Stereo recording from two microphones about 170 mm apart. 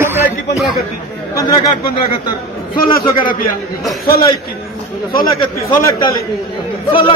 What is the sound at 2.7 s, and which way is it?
Speech, 25° left (ahead or behind).